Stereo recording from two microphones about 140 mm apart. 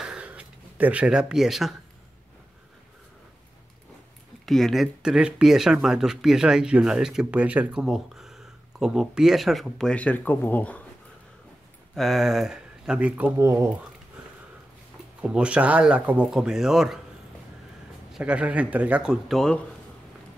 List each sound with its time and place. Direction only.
0.0 s a sound: 5° right (ahead or behind)
4.5 s speech: centre (ahead or behind)
11.9 s speech: centre (ahead or behind)
13.4 s speech: 20° right (ahead or behind)
15.2 s speech: 5° right (ahead or behind)
18.1 s speech: 10° right (ahead or behind)